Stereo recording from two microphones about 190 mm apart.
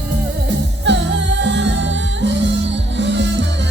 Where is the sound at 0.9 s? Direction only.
70° right (ahead or behind).